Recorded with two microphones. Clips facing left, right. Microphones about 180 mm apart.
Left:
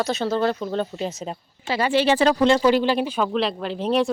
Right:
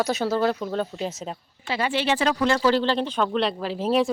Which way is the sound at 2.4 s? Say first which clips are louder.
Left 2 dB; 20° left (ahead or behind).